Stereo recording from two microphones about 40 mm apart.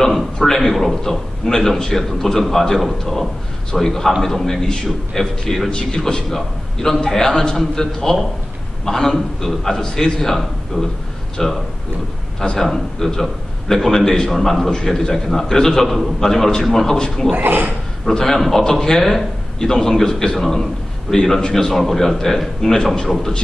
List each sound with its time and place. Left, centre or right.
0.1 s a man's voice: centre
17.4 s a man's voice: right
18.0 s a man's voice: centre